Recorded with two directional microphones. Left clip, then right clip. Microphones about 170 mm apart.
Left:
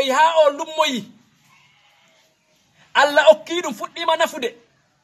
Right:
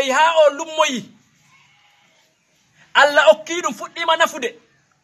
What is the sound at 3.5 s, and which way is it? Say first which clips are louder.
Speech: right 2 dB; centre (ahead or behind).